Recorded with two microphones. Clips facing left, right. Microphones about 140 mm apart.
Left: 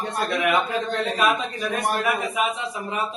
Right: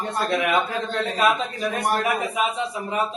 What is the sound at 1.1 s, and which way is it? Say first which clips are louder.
Speech: right 3 dB; 25° right (ahead or behind).